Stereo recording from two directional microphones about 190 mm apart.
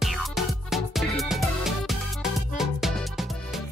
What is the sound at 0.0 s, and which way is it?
Music, centre (ahead or behind).